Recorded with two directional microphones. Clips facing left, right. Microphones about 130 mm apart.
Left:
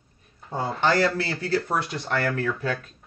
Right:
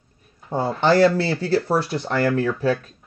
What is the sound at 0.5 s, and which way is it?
Speech, 30° right (ahead or behind).